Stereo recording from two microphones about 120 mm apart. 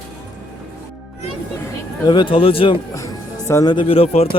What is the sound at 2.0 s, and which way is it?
A man's voice, 40° left (ahead or behind).